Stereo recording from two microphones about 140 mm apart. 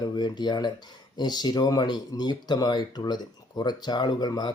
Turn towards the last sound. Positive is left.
turn(degrees=30)  # may be behind; listen again after turning